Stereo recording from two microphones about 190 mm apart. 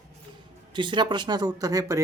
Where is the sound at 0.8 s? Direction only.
25° right (ahead or behind).